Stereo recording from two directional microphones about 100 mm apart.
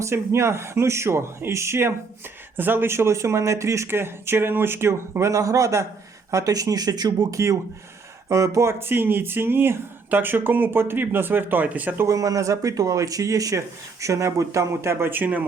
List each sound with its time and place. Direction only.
0.0 s speech: 30° right (ahead or behind)
12.0 s speech: 35° right (ahead or behind); by 15.4 s 15° right (ahead or behind)